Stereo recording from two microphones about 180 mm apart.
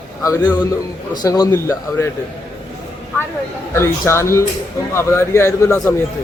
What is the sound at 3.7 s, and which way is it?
A man's voice, 15° left (ahead or behind).